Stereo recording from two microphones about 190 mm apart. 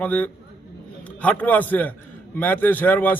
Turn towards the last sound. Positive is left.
turn(degrees=10)  # may be behind; listen again after turning